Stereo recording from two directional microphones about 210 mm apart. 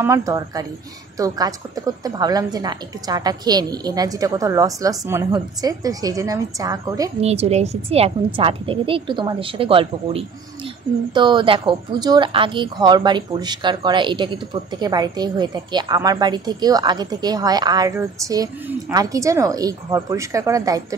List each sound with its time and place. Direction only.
0.0 s a woman's voice: 15° right (ahead or behind)
7.2 s speech: 30° right (ahead or behind)